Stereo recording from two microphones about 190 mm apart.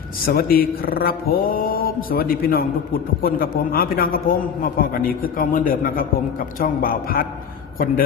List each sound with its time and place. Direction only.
0.3 s speech: 55° left (ahead or behind)